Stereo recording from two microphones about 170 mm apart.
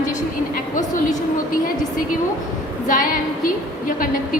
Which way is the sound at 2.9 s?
50° left (ahead or behind).